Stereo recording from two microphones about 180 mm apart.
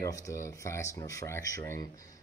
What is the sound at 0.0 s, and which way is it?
Speech, 15° left (ahead or behind).